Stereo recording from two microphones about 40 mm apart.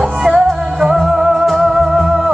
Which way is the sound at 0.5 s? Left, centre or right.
Centre.